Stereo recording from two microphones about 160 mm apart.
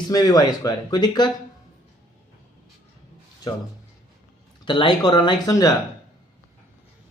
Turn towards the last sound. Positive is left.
turn(degrees=20)  # may be behind; listen again after turning